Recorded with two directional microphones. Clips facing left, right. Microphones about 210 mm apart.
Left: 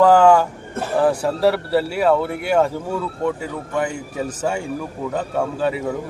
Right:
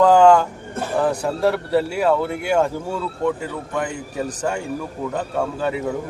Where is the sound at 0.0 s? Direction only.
5° left (ahead or behind).